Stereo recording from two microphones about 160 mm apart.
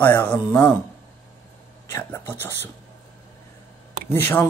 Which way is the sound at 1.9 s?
15° left (ahead or behind).